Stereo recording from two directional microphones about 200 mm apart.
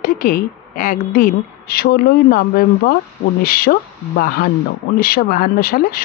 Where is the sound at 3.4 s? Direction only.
50° left (ahead or behind).